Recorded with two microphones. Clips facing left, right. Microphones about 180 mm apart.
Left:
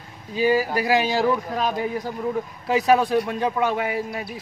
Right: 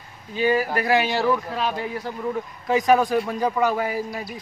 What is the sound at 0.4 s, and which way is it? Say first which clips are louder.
A man's voice: left 1 dB; 10° left (ahead or behind).